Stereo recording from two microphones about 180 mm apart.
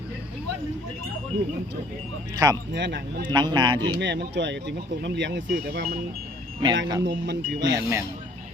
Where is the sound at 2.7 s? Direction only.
75° right (ahead or behind).